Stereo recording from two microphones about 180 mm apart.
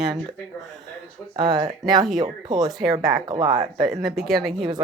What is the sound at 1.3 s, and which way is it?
Speech, 20° right (ahead or behind).